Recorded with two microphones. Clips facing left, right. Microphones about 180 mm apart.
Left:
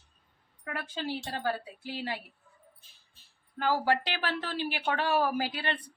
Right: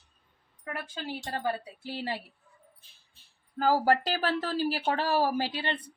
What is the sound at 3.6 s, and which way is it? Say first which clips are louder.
Speech: right 3 dB; 40° right (ahead or behind).